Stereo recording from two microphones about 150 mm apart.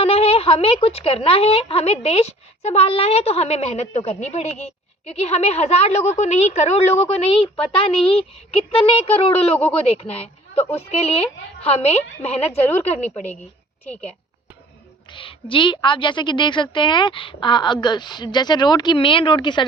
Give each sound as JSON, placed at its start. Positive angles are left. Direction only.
{"t": 0.0, "sound": "a woman's voice", "side_deg": 40}
{"t": 9.6, "sound": "a woman's voice", "side_deg": 10}
{"t": 10.0, "sound": "a woman's voice", "side_deg": 40}
{"t": 12.5, "sound": "a woman's voice", "side_deg": 10}
{"t": 15.1, "sound": "a woman's voice", "side_deg": 35}